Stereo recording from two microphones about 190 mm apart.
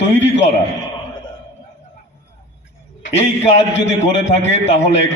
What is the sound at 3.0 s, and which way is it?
Speech, 35° left (ahead or behind).